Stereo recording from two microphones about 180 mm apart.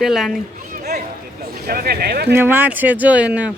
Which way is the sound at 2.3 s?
10° right (ahead or behind).